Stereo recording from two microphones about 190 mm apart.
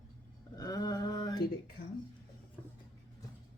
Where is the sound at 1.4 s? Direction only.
55° left (ahead or behind).